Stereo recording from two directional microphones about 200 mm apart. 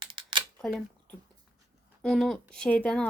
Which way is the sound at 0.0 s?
25° right (ahead or behind).